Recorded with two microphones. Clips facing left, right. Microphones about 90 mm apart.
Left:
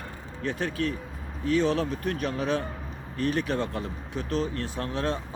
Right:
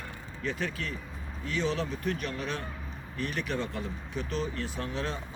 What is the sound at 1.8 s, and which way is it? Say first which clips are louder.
Speech: left 4 dB; 55° left (ahead or behind).